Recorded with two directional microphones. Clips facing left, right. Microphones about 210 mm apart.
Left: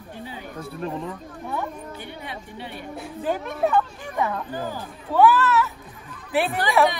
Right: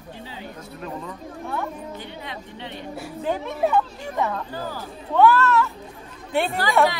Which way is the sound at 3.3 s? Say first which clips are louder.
Even; centre (ahead or behind).